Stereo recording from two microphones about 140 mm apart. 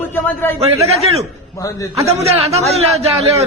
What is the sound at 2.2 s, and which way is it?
Speech, 45° right (ahead or behind).